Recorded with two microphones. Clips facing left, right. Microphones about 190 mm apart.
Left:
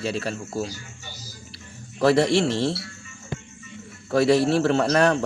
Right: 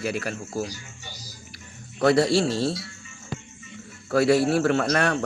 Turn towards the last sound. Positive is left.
turn(degrees=30)  # may be behind; listen again after turning